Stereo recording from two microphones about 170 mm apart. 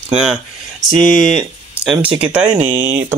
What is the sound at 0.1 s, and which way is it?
Speech, 5° right (ahead or behind).